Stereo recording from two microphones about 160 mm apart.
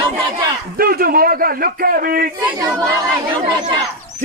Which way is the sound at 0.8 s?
65° right (ahead or behind).